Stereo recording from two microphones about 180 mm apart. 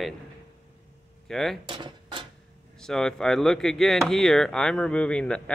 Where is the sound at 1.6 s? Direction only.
30° right (ahead or behind).